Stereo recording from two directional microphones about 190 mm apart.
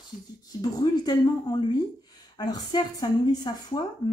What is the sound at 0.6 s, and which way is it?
Speech, 20° left (ahead or behind).